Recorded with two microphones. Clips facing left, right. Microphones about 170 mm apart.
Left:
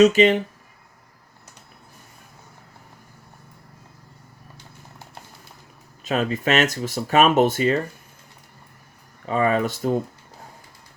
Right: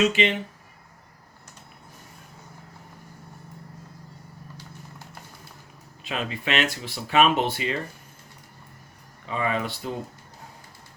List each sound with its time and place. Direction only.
0.0 s speech: 40° left (ahead or behind)
6.1 s speech: 45° left (ahead or behind)
9.2 s speech: 45° left (ahead or behind)